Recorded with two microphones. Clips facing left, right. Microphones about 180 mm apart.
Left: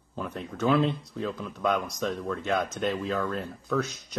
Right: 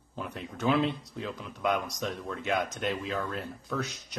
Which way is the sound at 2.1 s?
50° left (ahead or behind).